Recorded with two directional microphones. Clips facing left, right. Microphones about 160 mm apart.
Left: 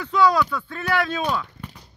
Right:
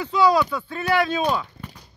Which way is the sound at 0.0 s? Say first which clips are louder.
Right 1 dB; 5° right (ahead or behind).